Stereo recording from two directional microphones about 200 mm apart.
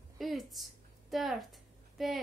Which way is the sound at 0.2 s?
Centre (ahead or behind).